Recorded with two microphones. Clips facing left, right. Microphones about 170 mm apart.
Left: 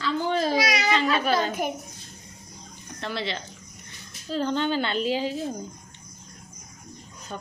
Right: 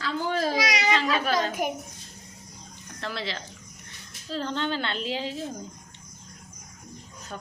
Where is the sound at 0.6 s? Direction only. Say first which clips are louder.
Left 1 dB; 15° right (ahead or behind).